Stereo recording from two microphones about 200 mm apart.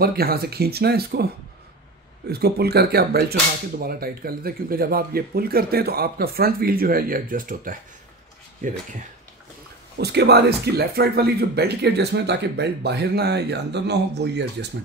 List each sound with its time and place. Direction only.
0.0 s whip: 50° right (ahead or behind)
2.2 s whip: 50° right (ahead or behind)
8.6 s speech: 40° right (ahead or behind)
9.9 s speech: 55° right (ahead or behind)